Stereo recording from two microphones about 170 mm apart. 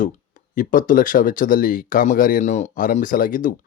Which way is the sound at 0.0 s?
50° left (ahead or behind).